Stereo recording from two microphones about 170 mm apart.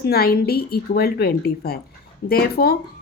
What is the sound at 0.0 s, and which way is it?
Speech, 65° left (ahead or behind).